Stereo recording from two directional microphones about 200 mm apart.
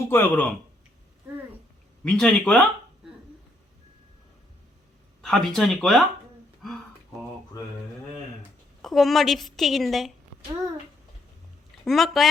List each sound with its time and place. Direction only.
0.0 s speech: 10° left (ahead or behind)
2.0 s speech: 5° left (ahead or behind)
5.2 s speech: 5° left (ahead or behind)
8.4 s a woman's voice: centre (ahead or behind)
11.9 s speech: centre (ahead or behind)